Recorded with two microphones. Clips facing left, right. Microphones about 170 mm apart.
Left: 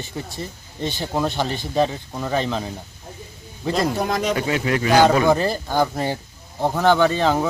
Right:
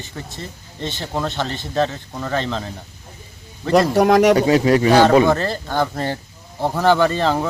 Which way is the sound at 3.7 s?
75° right (ahead or behind).